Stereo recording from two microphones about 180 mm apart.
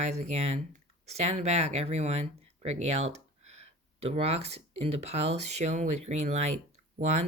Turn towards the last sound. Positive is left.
turn(degrees=-40)  # may be behind; listen again after turning